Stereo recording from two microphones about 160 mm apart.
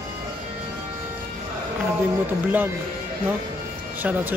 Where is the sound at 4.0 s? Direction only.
10° right (ahead or behind).